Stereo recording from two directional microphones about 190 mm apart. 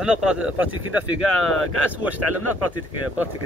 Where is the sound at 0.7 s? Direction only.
90° right.